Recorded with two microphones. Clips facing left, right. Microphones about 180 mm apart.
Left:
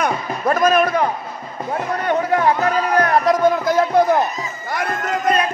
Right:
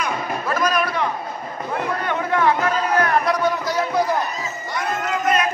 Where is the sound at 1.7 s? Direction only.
40° left (ahead or behind).